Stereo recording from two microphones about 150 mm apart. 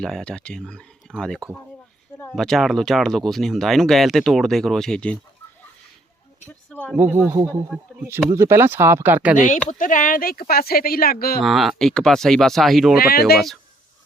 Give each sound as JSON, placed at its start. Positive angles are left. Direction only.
{"t": 0.0, "sound": "speech", "side_deg": 5}
{"t": 1.1, "sound": "speech", "side_deg": -10}
{"t": 2.3, "sound": "speech", "side_deg": 0}
{"t": 6.7, "sound": "a sound", "side_deg": 5}
{"t": 6.9, "sound": "speech", "side_deg": -15}
{"t": 9.3, "sound": "speech", "side_deg": 60}
{"t": 11.4, "sound": "speech", "side_deg": 0}
{"t": 13.0, "sound": "speech", "side_deg": 90}